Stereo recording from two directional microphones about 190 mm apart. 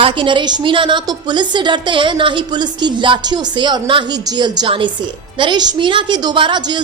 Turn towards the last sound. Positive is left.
turn(degrees=-25)  # may be behind; listen again after turning